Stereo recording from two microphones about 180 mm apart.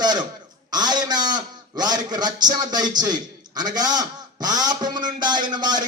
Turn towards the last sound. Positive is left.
turn(degrees=-25)  # may be behind; listen again after turning